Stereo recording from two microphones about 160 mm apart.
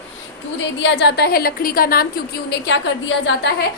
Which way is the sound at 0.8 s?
90° left.